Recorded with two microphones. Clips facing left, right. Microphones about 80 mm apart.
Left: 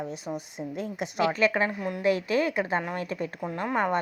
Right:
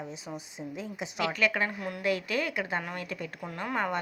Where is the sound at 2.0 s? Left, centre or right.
Left.